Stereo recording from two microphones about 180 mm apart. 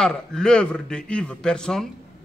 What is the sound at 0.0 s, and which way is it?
A man's voice, 5° left (ahead or behind).